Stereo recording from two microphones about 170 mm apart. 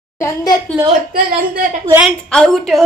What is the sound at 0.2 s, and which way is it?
Speech, 20° left (ahead or behind).